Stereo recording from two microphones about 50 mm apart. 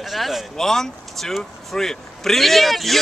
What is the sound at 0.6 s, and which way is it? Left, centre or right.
Speech, centre.